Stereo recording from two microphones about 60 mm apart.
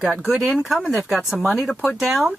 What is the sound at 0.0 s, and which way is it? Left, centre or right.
Speech, centre.